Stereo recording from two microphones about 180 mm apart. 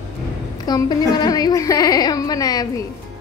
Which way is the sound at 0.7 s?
25° left (ahead or behind).